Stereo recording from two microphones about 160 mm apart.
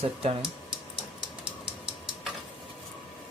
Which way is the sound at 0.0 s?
40° right (ahead or behind).